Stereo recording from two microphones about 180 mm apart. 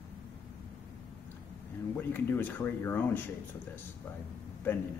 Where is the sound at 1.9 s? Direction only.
10° left (ahead or behind).